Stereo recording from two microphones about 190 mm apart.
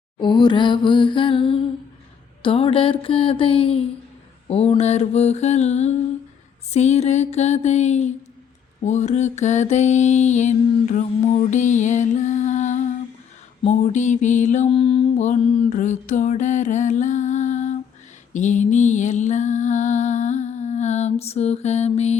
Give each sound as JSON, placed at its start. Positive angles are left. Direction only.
{"t": 0.2, "sound": "a sound", "side_deg": 25}
{"t": 4.4, "sound": "mantra", "side_deg": 30}
{"t": 18.3, "sound": "music", "side_deg": 40}